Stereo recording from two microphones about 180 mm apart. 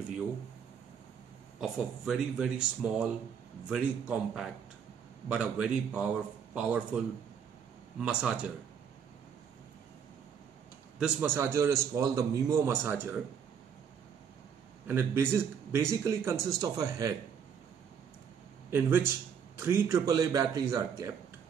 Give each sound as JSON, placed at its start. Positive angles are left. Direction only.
{"t": 1.6, "sound": "speech", "side_deg": 0}
{"t": 8.0, "sound": "a man's voice", "side_deg": -5}
{"t": 11.0, "sound": "a man's voice", "side_deg": -10}
{"t": 14.9, "sound": "a man's voice", "side_deg": -15}
{"t": 18.7, "sound": "a man's voice", "side_deg": -10}